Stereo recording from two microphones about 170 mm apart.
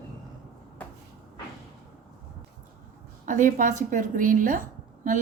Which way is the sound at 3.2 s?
50° right (ahead or behind).